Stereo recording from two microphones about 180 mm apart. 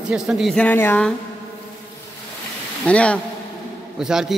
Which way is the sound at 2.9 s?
5° left (ahead or behind).